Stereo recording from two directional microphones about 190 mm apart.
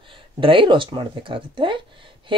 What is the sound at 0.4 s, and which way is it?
Speech, 25° right (ahead or behind).